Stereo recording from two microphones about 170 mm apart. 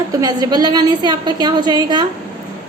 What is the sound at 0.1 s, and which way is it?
A woman's voice, 20° right (ahead or behind).